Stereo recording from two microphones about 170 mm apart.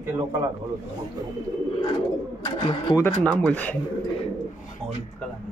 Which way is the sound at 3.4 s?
10° left (ahead or behind).